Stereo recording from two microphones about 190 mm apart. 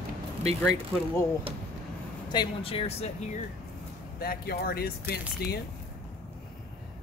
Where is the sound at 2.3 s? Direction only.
25° left (ahead or behind).